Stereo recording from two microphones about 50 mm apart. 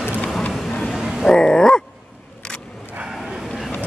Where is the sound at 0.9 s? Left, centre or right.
Centre.